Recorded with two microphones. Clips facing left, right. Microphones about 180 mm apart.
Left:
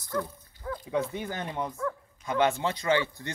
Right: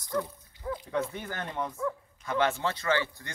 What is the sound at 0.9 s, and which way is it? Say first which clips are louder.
Speech: left 4 dB; 15° left (ahead or behind).